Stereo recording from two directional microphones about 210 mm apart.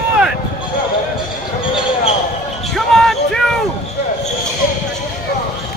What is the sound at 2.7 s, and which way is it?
Basketball bounce, centre (ahead or behind).